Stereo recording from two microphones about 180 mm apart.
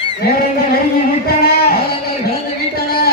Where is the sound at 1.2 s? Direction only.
60° left (ahead or behind).